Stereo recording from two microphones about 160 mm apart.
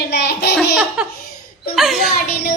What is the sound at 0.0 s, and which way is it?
Laughter, 90° left.